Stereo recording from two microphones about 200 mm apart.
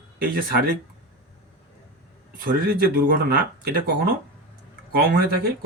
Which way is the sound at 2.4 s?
50° right (ahead or behind).